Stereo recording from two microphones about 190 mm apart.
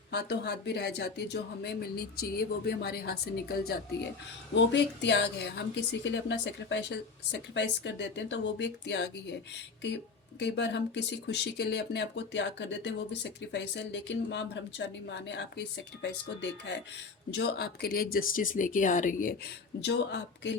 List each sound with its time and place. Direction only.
0.1 s speech: 60° left (ahead or behind)
4.5 s speech: 65° left (ahead or behind)
10.4 s speech: 65° left (ahead or behind); by 19.3 s 45° left (ahead or behind)
19.8 s speech: 65° left (ahead or behind)